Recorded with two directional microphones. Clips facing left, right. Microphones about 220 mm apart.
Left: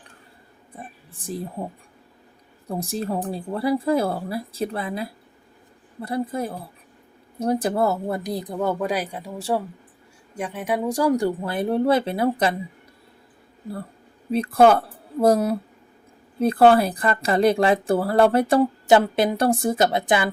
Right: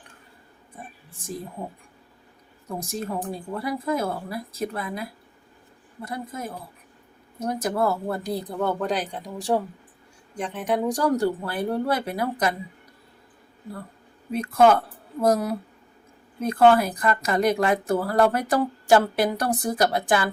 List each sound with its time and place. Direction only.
2.6 s a woman's voice: 35° left (ahead or behind)
14.3 s a woman's voice: 30° left (ahead or behind)